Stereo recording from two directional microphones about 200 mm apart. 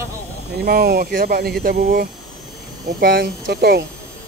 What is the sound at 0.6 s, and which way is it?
Speech, 50° right (ahead or behind).